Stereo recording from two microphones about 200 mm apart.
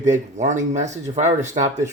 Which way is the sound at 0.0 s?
35° right (ahead or behind).